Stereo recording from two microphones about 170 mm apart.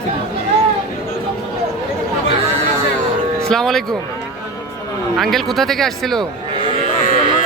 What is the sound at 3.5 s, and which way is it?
Speech, 5° left (ahead or behind).